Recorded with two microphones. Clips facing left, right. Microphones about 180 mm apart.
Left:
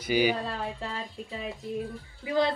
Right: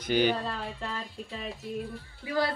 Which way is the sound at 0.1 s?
10° left (ahead or behind).